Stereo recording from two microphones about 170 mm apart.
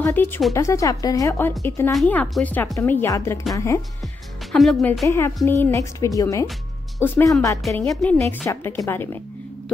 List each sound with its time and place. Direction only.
0.0 s speech: 10° left (ahead or behind)
2.0 s speech: 5° left (ahead or behind)
4.5 s a woman's voice: centre (ahead or behind)
5.0 s speech: 15° left (ahead or behind)